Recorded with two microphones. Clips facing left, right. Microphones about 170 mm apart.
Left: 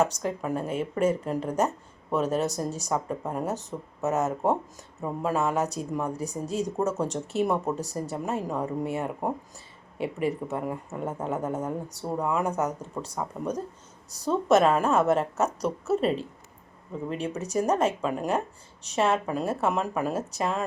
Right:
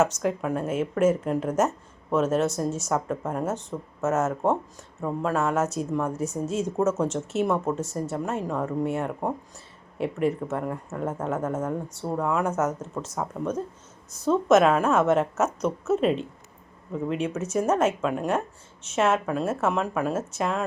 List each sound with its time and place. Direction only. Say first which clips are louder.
0.2 s speech: right 3 dB; centre (ahead or behind)
14.6 s speech: right 1 dB; centre (ahead or behind)
15.4 s speech: right 2 dB; 35° left (ahead or behind)
16.0 s speech: right 3 dB; centre (ahead or behind)
17.5 s speech: right 1 dB; 5° right (ahead or behind)